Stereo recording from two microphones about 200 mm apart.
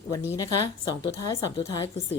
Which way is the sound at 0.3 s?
20° left (ahead or behind).